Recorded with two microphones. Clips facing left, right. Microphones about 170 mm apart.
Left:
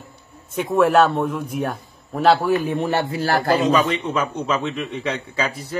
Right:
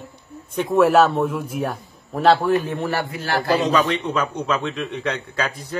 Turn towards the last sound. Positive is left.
turn(degrees=10)  # may be behind; listen again after turning